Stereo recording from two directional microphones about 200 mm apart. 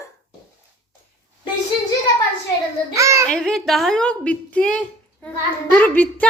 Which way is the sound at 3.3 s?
5° left (ahead or behind).